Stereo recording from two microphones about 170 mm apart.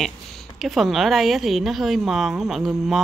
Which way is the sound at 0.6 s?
Centre (ahead or behind).